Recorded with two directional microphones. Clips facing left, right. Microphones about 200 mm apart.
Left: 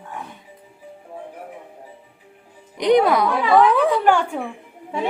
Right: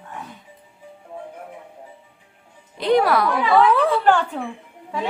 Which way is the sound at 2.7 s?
20° left (ahead or behind).